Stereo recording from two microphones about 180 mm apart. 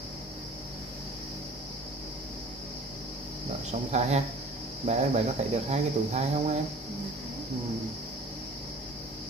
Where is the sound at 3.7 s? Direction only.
40° right (ahead or behind).